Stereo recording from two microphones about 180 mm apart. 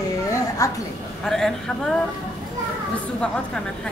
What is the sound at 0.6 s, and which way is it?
Speech, 20° left (ahead or behind).